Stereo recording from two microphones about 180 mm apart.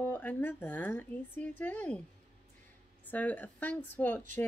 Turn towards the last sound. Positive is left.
turn(degrees=10)  # may be behind; listen again after turning